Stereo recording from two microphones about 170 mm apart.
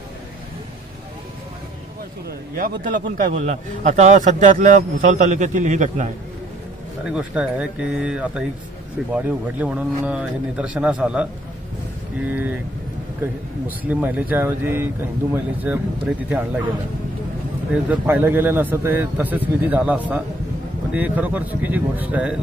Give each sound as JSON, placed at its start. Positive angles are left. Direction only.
{"t": 2.5, "sound": "a man's voice", "side_deg": -55}
{"t": 7.1, "sound": "speech", "side_deg": -5}
{"t": 12.3, "sound": "speech", "side_deg": -10}
{"t": 17.8, "sound": "speech", "side_deg": -10}